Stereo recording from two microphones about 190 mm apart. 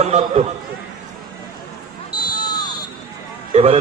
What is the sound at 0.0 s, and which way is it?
Speech, 35° right (ahead or behind).